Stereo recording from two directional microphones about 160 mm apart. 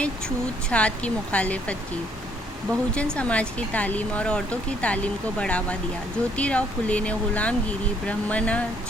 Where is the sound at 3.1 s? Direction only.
10° left (ahead or behind).